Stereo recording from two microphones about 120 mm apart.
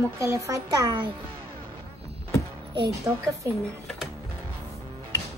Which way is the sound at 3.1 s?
15° right (ahead or behind).